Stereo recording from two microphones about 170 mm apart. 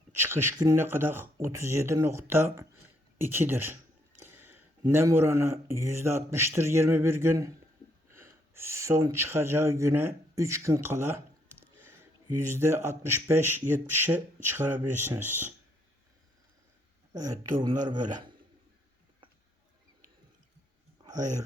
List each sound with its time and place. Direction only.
0.2 s speech: 15° right (ahead or behind)
4.9 s speech: 15° right (ahead or behind)
17.2 s speech: 20° right (ahead or behind)